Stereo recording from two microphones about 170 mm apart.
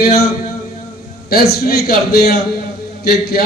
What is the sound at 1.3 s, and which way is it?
A man's voice, 65° left (ahead or behind).